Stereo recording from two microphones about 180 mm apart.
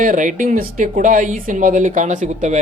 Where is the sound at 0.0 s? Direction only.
45° right (ahead or behind).